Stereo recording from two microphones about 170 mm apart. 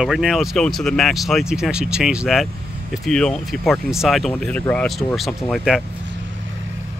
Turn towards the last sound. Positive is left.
turn(degrees=0)  # may be behind; listen again after turning